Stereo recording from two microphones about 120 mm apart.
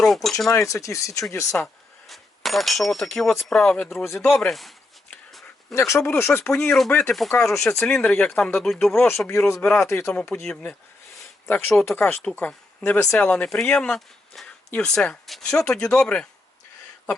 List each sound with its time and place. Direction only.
0.0 s speech: centre (ahead or behind)
0.5 s speech: 25° left (ahead or behind)
1.6 s speech: centre (ahead or behind)
3.8 s speech: centre (ahead or behind)
5.7 s speech: 25° left (ahead or behind)
6.6 s speech: 5° left (ahead or behind)
9.0 s speech: 20° left (ahead or behind)
9.8 s speech: 25° left (ahead or behind)
10.1 s speech: 5° left (ahead or behind)
11.4 s speech: 20° left (ahead or behind)